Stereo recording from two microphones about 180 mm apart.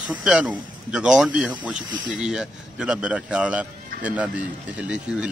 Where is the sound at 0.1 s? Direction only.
5° right (ahead or behind).